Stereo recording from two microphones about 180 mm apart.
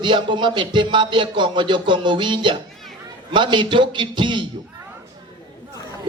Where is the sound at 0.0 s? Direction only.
25° right (ahead or behind).